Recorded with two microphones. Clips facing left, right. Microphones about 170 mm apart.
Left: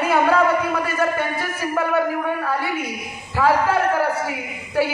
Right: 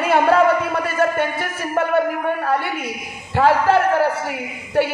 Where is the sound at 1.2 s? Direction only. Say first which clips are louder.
Right 2 dB; 60° right (ahead or behind).